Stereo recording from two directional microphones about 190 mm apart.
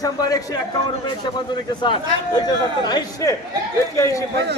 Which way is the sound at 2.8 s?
20° left (ahead or behind).